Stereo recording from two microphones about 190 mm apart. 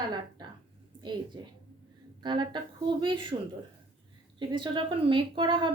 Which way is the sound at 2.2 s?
25° right (ahead or behind).